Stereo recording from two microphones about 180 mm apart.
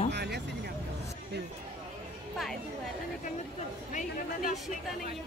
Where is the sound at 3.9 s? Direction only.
45° left (ahead or behind).